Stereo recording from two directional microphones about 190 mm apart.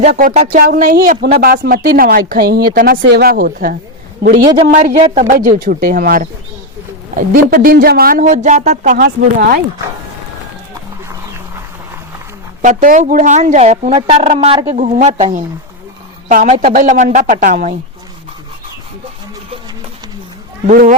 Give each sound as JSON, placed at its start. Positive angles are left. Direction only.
{"t": 0.0, "sound": "a woman's voice", "side_deg": -35}
{"t": 0.6, "sound": "speech", "side_deg": -50}
{"t": 3.0, "sound": "a man's voice", "side_deg": -60}
{"t": 12.6, "sound": "a woman's voice", "side_deg": -45}
{"t": 20.7, "sound": "speech", "side_deg": -40}